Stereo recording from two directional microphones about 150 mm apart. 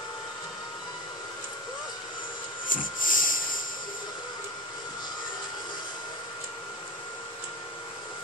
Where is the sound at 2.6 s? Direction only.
65° left (ahead or behind).